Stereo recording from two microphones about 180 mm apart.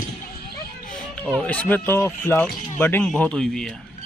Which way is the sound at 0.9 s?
5° left (ahead or behind).